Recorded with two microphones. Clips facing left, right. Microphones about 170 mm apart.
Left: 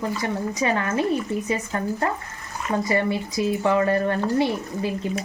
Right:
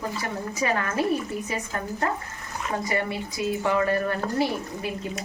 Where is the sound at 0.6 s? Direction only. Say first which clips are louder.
Left 1 dB; 25° left (ahead or behind).